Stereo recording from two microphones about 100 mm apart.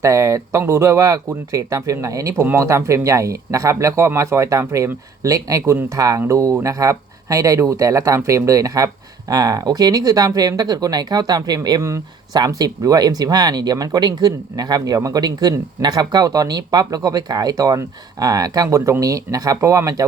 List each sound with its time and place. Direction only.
0.0 s speech: 30° right (ahead or behind)